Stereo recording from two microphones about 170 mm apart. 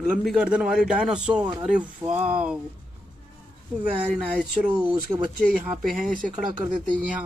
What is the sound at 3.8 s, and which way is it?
A man's voice, 5° right (ahead or behind).